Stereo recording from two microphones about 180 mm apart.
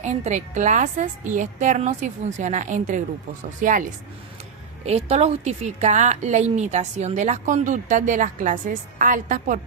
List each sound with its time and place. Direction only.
0.0 s a woman's voice: 40° right (ahead or behind)
4.9 s a woman's voice: 35° right (ahead or behind)